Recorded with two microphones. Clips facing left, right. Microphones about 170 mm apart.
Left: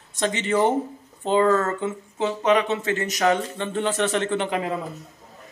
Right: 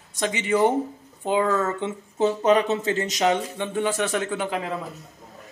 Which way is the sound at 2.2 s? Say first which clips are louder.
Right 2 dB; 40° right (ahead or behind).